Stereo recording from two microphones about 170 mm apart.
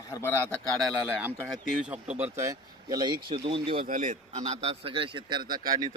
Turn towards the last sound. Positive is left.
turn(degrees=-25)  # may be behind; listen again after turning